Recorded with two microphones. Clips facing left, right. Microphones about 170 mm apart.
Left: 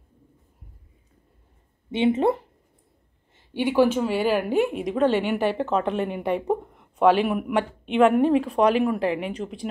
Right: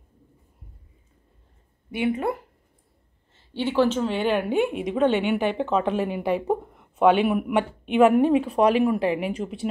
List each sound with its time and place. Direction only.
1.9 s speech: 25° left (ahead or behind)
3.3 s a woman's voice: 15° left (ahead or behind); by 9.7 s 5° right (ahead or behind)